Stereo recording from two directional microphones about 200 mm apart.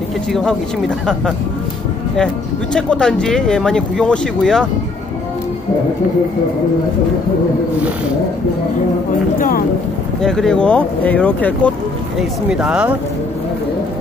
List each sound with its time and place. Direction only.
0.3 s speech: 5° left (ahead or behind)
2.7 s speech: 5° left (ahead or behind)
9.4 s speech: 45° left (ahead or behind)
10.2 s speech: centre (ahead or behind)
12.2 s speech: 5° right (ahead or behind)